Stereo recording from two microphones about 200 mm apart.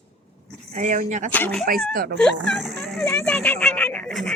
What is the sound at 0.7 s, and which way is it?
Speech, 40° right (ahead or behind).